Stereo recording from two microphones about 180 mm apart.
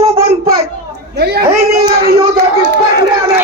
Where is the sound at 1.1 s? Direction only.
60° right (ahead or behind).